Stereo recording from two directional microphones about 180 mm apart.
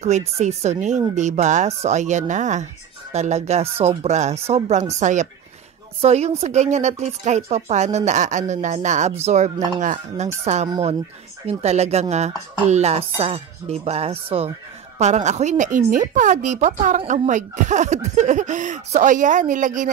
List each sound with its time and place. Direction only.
0.4 s speech: 40° right (ahead or behind)